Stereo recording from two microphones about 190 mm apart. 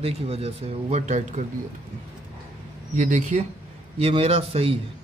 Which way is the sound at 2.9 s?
40° right (ahead or behind).